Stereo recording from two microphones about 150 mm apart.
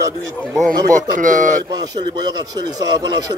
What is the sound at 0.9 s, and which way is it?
Speech, 60° right (ahead or behind).